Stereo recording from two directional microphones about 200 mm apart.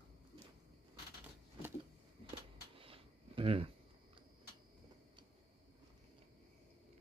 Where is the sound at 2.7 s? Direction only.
30° right (ahead or behind).